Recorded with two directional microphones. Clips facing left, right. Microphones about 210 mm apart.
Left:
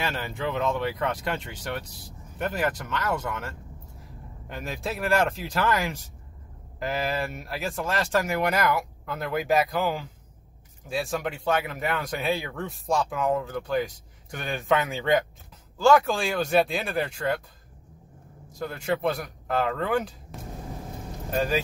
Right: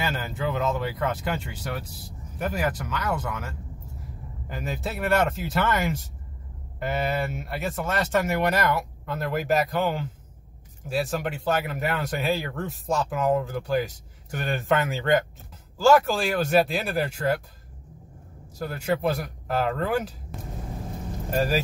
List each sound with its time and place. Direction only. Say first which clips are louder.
0.0 s speech: right 1 dB; 5° right (ahead or behind)
18.6 s speech: right 1 dB; 5° right (ahead or behind)